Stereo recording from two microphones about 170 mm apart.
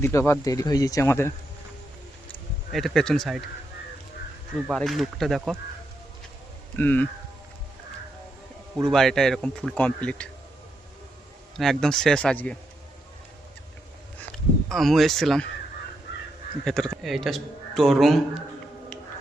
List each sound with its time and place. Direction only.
0.0 s speech: 15° left (ahead or behind)
2.7 s speech: centre (ahead or behind)
4.7 s speech: centre (ahead or behind)
6.7 s speech: 10° left (ahead or behind)
8.8 s speech: centre (ahead or behind)
11.5 s speech: centre (ahead or behind)
14.3 s speech: centre (ahead or behind)
16.6 s speech: 5° left (ahead or behind)